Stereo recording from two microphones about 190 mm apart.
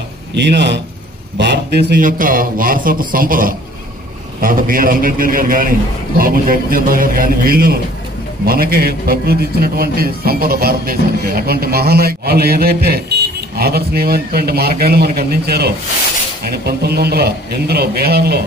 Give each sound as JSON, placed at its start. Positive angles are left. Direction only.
{"t": 0.3, "sound": "a man's voice", "side_deg": -65}